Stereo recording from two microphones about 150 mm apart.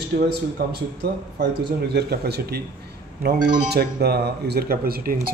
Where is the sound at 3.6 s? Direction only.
90° right.